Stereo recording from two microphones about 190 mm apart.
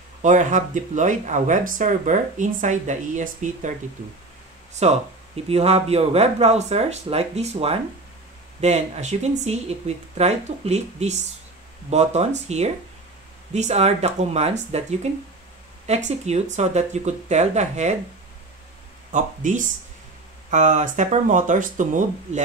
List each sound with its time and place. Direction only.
0.2 s speech: 40° right (ahead or behind)
4.7 s speech: 35° right (ahead or behind)
19.1 s speech: 40° right (ahead or behind)